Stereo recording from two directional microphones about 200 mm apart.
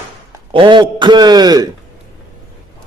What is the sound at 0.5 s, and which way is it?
A man's voice, 25° right (ahead or behind).